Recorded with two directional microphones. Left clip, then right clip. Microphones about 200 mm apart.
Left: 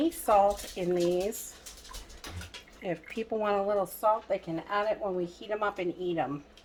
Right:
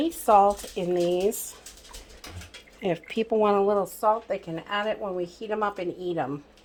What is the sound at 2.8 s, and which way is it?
Speech, 45° right (ahead or behind).